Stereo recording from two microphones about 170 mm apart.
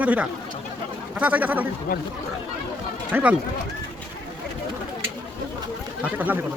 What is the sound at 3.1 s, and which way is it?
Speech, 10° right (ahead or behind).